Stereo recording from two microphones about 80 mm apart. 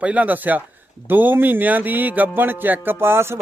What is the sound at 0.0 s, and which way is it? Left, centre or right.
A man's voice, centre.